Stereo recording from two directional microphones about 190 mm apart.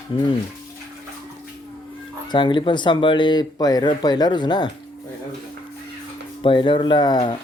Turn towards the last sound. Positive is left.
turn(degrees=20)  # may be behind; listen again after turning